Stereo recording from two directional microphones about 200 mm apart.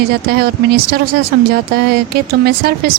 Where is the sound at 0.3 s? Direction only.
50° right (ahead or behind).